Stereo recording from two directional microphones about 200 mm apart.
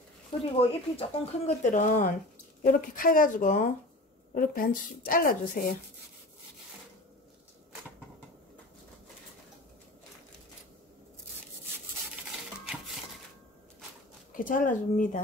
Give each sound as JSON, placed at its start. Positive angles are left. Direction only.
{"t": 0.5, "sound": "a woman's voice", "side_deg": 30}
{"t": 14.3, "sound": "speech", "side_deg": 40}